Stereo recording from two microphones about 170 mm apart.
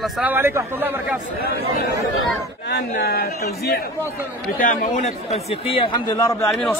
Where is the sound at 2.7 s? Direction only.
85° left; by 3.8 s 65° left (ahead or behind).